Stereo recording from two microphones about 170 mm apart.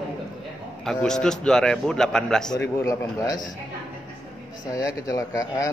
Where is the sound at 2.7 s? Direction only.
20° left (ahead or behind).